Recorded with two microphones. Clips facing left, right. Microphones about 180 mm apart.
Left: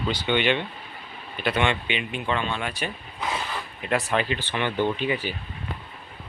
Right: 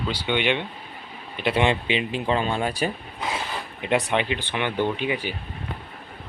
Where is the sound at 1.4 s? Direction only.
30° right (ahead or behind).